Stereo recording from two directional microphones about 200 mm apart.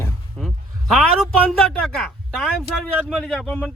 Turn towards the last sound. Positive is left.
turn(degrees=5)  # may be behind; listen again after turning